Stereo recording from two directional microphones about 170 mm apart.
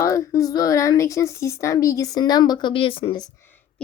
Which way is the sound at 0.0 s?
20° left (ahead or behind).